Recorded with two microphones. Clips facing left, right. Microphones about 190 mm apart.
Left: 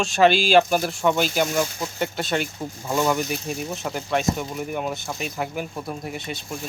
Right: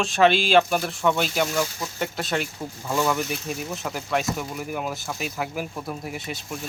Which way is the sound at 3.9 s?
Centre (ahead or behind).